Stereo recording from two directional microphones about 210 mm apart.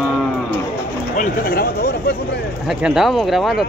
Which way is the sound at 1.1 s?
40° left (ahead or behind).